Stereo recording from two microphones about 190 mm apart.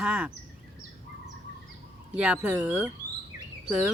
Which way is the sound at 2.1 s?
5° right (ahead or behind).